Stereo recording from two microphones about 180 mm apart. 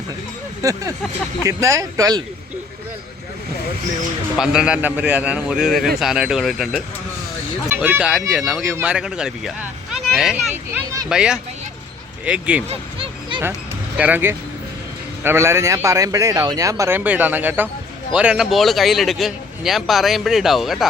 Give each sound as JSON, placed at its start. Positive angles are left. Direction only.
{"t": 0.6, "sound": "a man's voice", "side_deg": -20}
{"t": 4.4, "sound": "a man's voice", "side_deg": -5}
{"t": 12.6, "sound": "a sound", "side_deg": -30}
{"t": 13.9, "sound": "a man's voice", "side_deg": -10}